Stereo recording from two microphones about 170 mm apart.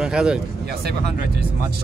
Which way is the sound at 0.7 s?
65° right (ahead or behind).